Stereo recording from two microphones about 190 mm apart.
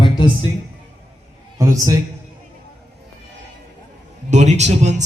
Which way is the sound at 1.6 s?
15° right (ahead or behind).